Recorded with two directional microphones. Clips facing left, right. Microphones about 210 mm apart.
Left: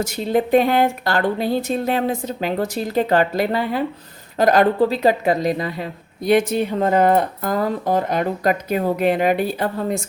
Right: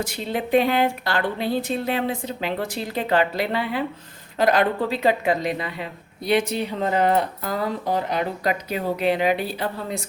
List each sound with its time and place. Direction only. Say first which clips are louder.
0.0 s a woman's voice: left 7 dB; 40° left (ahead or behind)